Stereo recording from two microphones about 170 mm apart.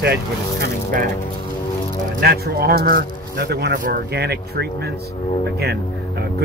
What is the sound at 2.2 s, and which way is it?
Speech, 65° right (ahead or behind).